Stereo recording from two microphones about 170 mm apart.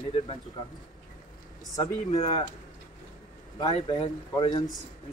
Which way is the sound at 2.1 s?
35° left (ahead or behind).